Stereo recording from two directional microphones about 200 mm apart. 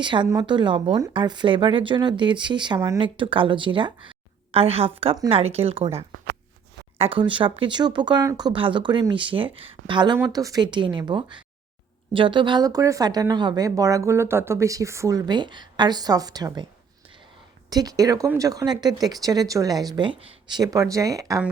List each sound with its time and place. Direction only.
0.0 s speech: 25° right (ahead or behind)
17.7 s speech: 20° right (ahead or behind)